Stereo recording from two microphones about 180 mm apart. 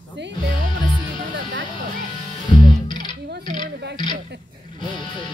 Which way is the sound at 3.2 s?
65° right (ahead or behind).